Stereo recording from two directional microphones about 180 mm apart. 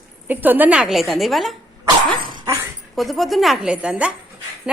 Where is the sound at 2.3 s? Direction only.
25° right (ahead or behind).